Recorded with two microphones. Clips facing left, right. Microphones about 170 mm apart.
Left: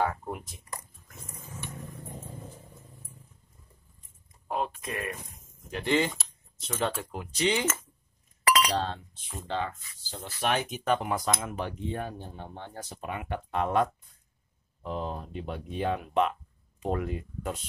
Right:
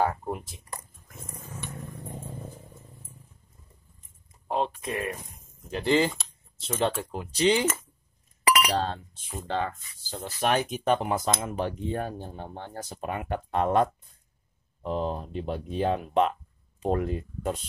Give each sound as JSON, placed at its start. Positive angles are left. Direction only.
{"t": 0.0, "sound": "speech", "side_deg": -30}
{"t": 4.5, "sound": "speech", "side_deg": -30}
{"t": 8.5, "sound": "chink", "side_deg": -10}
{"t": 8.7, "sound": "speech", "side_deg": -40}
{"t": 10.8, "sound": "speech", "side_deg": -30}